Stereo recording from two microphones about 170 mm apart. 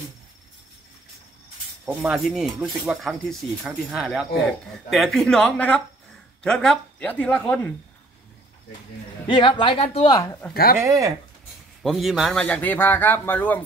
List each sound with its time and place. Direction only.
1.9 s a man's voice: 5° right (ahead or behind)
9.3 s speech: 30° left (ahead or behind)
10.2 s a man's voice: 15° left (ahead or behind)
10.5 s speech: 60° left (ahead or behind)
10.8 s speech: 20° right (ahead or behind)
11.8 s a man's voice: centre (ahead or behind)